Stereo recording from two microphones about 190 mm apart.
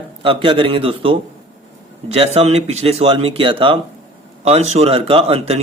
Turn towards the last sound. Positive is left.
turn(degrees=-35)  # may be behind; listen again after turning